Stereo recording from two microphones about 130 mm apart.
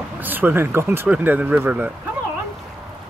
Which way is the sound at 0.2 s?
15° right (ahead or behind).